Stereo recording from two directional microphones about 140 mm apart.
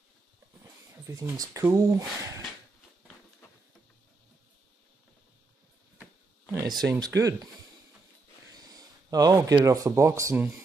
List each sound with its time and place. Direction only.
1.0 s speech: 25° right (ahead or behind)
6.7 s speech: 30° right (ahead or behind)
8.5 s speech: 25° right (ahead or behind)